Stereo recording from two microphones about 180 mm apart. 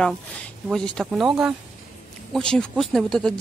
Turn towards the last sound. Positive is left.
turn(degrees=5)  # may be behind; listen again after turning